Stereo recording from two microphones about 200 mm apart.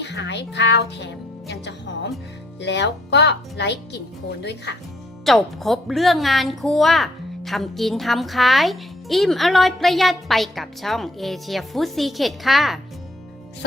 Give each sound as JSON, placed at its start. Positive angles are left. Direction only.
{"t": 0.0, "sound": "speech", "side_deg": 60}
{"t": 5.2, "sound": "a woman's voice", "side_deg": 0}